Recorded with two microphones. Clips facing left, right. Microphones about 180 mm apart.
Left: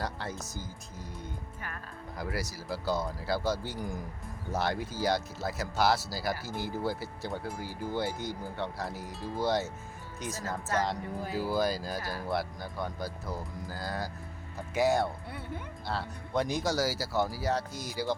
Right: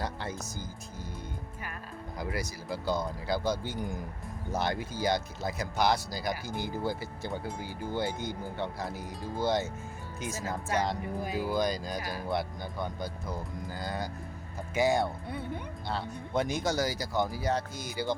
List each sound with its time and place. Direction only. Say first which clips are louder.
0.0 s speech: right 1 dB; centre (ahead or behind)
2.1 s speech: even; centre (ahead or behind)
10.3 s speech: right 1 dB; 15° right (ahead or behind)
11.5 s speech: left 1 dB; 5° left (ahead or behind)
11.9 s speech: right 1 dB; 15° right (ahead or behind)
12.3 s speech: right 1 dB; centre (ahead or behind)
15.3 s speech: right 4 dB; 20° right (ahead or behind)
15.9 s speech: even; centre (ahead or behind)